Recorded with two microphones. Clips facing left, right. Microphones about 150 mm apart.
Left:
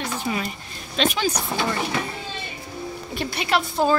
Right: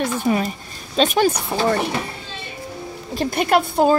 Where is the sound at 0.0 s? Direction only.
45° right (ahead or behind).